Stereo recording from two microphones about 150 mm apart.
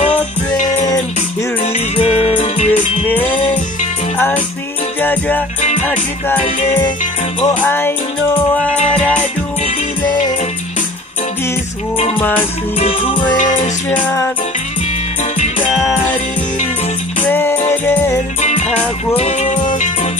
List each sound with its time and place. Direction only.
1.6 s music: 45° left (ahead or behind)
3.1 s music: 10° left (ahead or behind)
5.0 s music: 10° left (ahead or behind)
7.4 s music: 15° left (ahead or behind)
12.7 s music: 40° left (ahead or behind)
13.8 s music: 15° left (ahead or behind)
17.3 s music: 15° left (ahead or behind)
18.4 s music: 50° left (ahead or behind)